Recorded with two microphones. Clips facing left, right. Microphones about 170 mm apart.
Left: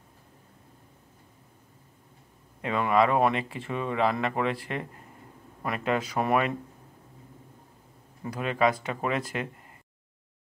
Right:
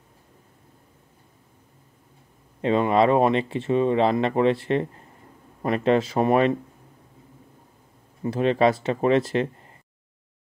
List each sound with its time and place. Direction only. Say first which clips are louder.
2.6 s speech: right 5 dB; 25° right (ahead or behind)
8.2 s speech: right 6 dB; 30° right (ahead or behind)